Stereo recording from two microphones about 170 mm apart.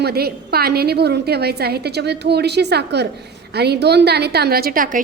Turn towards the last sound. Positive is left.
turn(degrees=-55)  # may be behind; listen again after turning